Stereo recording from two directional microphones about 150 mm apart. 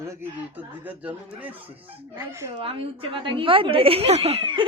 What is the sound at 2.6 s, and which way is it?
A woman's voice, 35° right (ahead or behind).